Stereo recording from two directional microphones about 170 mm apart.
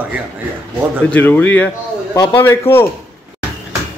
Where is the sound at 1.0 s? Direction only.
10° left (ahead or behind).